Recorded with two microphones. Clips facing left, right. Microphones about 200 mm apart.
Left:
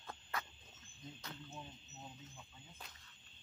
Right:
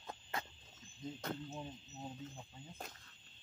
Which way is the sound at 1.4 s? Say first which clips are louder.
Right 6 dB; 25° right (ahead or behind).